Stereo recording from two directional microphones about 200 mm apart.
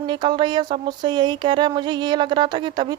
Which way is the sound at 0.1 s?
25° right (ahead or behind).